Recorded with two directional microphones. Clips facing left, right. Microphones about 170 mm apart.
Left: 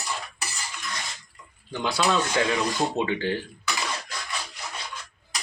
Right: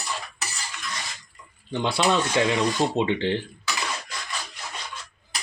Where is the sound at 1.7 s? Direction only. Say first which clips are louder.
Right 2 dB; 25° right (ahead or behind).